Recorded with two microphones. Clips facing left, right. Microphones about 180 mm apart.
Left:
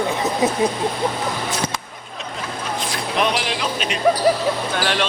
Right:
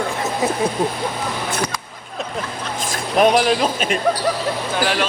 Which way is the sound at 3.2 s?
45° right (ahead or behind).